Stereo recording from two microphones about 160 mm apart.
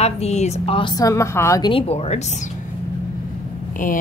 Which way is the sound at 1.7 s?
35° left (ahead or behind).